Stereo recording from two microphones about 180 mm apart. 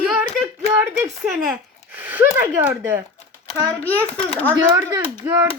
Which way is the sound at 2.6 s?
10° right (ahead or behind).